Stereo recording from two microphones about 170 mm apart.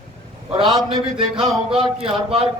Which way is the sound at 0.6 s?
25° right (ahead or behind).